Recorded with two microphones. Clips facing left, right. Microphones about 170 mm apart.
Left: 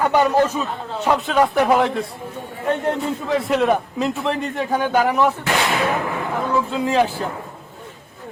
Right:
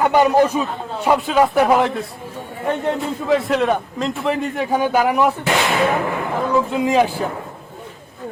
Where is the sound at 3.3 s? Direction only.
Centre (ahead or behind).